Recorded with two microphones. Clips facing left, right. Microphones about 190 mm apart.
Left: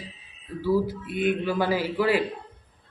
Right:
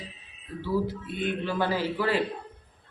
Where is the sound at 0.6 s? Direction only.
10° left (ahead or behind).